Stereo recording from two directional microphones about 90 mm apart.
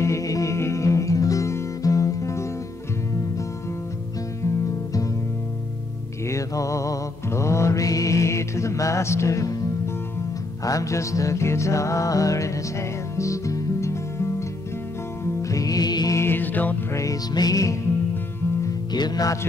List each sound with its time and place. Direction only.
0.0 s music: 35° left (ahead or behind)
6.2 s music: 35° left (ahead or behind)
10.6 s music: 40° left (ahead or behind)
15.4 s music: 40° left (ahead or behind)
16.2 s music: 25° left (ahead or behind)
16.9 s music: 40° left (ahead or behind)
18.9 s music: 45° left (ahead or behind)